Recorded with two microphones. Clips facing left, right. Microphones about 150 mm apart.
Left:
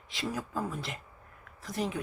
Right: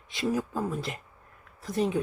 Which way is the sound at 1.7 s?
25° right (ahead or behind).